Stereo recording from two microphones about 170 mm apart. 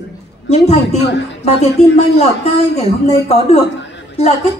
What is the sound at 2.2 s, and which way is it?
A woman's voice, 35° left (ahead or behind).